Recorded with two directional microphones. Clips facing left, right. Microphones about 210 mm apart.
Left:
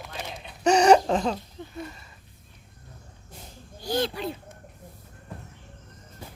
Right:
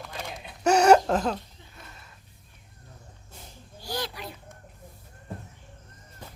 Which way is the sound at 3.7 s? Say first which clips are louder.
Left 7 dB; 20° left (ahead or behind).